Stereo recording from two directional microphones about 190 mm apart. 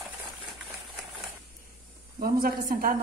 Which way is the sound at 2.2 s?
50° right (ahead or behind).